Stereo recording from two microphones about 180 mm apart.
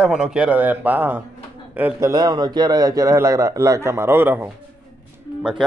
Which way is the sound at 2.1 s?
20° right (ahead or behind).